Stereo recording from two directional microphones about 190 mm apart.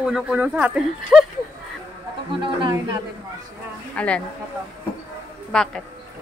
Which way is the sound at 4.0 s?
5° left (ahead or behind).